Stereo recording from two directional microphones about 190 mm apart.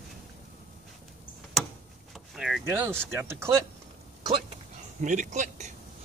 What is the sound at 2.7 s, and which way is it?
Speech, 15° right (ahead or behind).